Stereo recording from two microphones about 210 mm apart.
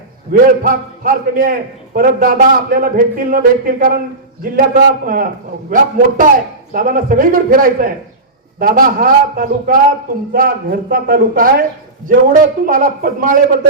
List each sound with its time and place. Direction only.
0.3 s a man's voice: 40° right (ahead or behind)
5.0 s a man's voice: 40° right (ahead or behind)